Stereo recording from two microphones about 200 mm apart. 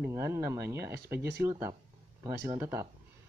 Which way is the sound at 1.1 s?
55° right (ahead or behind).